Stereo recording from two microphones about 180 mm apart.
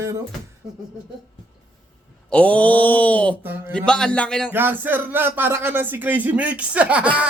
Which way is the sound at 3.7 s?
5° left (ahead or behind).